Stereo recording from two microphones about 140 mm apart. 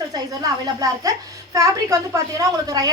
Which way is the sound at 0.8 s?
25° right (ahead or behind).